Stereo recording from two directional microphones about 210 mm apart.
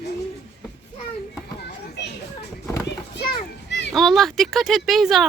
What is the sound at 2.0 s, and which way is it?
Children playing, 55° left (ahead or behind).